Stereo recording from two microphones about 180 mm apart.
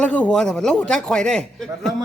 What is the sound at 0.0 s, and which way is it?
A man's voice, 5° left (ahead or behind).